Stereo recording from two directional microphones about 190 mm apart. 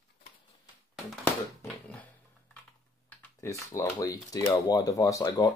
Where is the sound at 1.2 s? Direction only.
10° left (ahead or behind).